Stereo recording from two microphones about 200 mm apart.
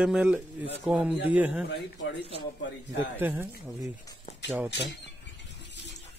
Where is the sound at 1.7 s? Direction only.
55° left (ahead or behind).